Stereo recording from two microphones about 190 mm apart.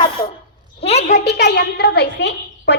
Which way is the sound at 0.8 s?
35° left (ahead or behind).